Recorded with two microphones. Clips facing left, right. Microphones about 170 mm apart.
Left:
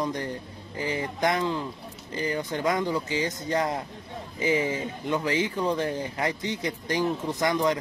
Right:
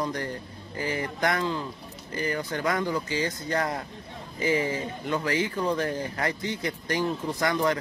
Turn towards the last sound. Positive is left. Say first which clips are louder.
# left 1 dB
turn(degrees=15)  # may be behind; listen again after turning